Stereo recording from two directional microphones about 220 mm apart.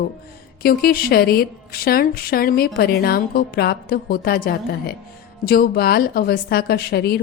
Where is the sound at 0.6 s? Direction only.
45° left (ahead or behind).